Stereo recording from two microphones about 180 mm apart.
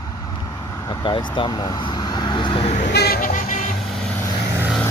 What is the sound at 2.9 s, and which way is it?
Music, 60° left (ahead or behind).